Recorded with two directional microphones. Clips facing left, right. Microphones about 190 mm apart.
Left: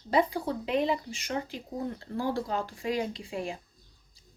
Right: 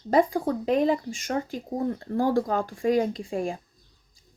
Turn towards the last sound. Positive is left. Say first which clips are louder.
# right 6 dB
turn(degrees=-50)  # may be behind; listen again after turning